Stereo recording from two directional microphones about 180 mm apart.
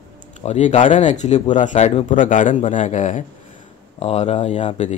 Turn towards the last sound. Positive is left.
turn(degrees=40)  # may be behind; listen again after turning